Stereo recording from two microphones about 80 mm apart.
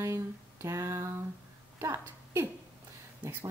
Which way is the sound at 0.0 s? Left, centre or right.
Right.